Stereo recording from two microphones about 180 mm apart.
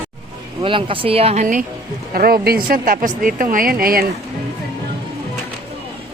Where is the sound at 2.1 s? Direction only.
55° right (ahead or behind).